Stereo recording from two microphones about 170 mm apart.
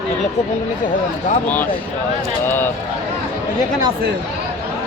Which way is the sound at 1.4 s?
10° left (ahead or behind).